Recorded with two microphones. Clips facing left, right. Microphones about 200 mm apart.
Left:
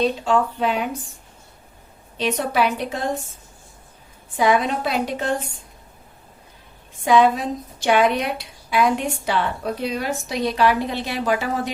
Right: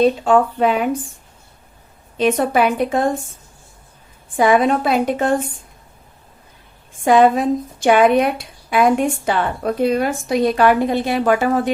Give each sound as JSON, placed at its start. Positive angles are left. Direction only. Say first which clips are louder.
{"t": 0.0, "sound": "a woman's voice", "louder": "right 6 dB", "side_deg": -50}
{"t": 2.1, "sound": "a woman's voice", "louder": "right 5 dB", "side_deg": -50}
{"t": 4.4, "sound": "a woman's voice", "louder": "right 5 dB", "side_deg": -50}
{"t": 7.0, "sound": "a woman's voice", "louder": "right 4 dB", "side_deg": -50}